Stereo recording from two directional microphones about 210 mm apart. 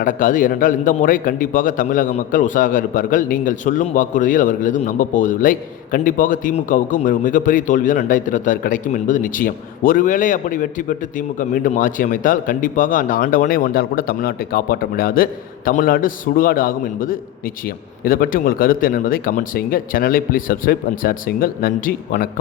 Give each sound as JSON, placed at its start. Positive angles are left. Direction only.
{"t": 0.0, "sound": "a man's voice", "side_deg": 40}